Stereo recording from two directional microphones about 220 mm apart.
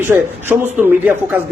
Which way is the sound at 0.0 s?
10° right (ahead or behind).